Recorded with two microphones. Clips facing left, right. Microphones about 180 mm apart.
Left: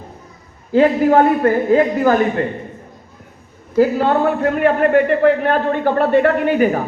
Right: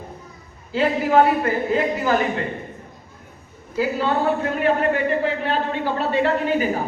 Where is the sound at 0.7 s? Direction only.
50° left (ahead or behind).